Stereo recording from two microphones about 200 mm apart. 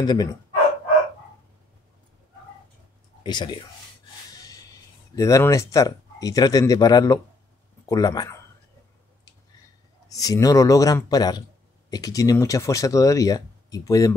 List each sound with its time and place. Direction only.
0.0 s speech: 20° left (ahead or behind)
3.3 s speech: 20° left (ahead or behind)
10.0 s speech: 15° left (ahead or behind)